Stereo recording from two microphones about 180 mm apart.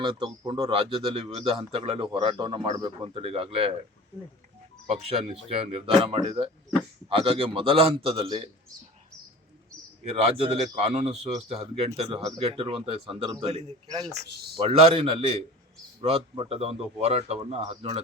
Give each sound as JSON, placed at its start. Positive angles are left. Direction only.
{"t": 0.0, "sound": "a man's voice", "side_deg": -25}
{"t": 4.9, "sound": "a man's voice", "side_deg": -35}
{"t": 10.0, "sound": "a man's voice", "side_deg": -35}
{"t": 14.1, "sound": "speech", "side_deg": -60}
{"t": 14.5, "sound": "a man's voice", "side_deg": -30}